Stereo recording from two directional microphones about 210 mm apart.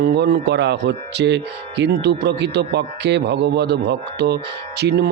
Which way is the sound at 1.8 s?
50° right (ahead or behind).